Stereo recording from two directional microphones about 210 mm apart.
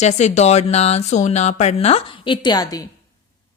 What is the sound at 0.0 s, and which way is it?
Speech, 30° left (ahead or behind).